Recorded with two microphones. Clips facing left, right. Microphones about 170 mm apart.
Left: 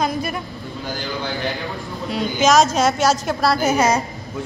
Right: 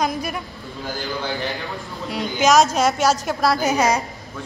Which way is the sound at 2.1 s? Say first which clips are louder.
Left 1 dB; 10° right (ahead or behind).